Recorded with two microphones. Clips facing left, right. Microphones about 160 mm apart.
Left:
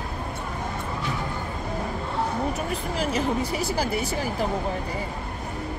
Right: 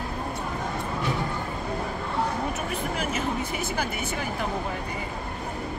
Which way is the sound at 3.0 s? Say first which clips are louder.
Left 6 dB; 35° left (ahead or behind).